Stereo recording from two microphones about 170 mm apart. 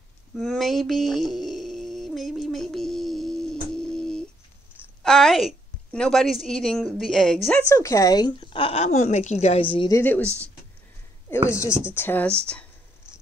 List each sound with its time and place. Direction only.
0.4 s a sound: centre (ahead or behind)
5.0 s a woman's voice: centre (ahead or behind)
7.6 s speech: 15° left (ahead or behind)
9.9 s speech: 10° left (ahead or behind)
10.2 s speech: 15° right (ahead or behind)
11.4 s speech: 20° left (ahead or behind)